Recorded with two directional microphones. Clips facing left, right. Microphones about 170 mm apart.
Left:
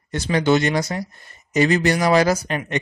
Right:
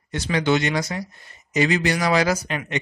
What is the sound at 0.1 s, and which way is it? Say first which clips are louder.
Speech: left 3 dB; 45° left (ahead or behind).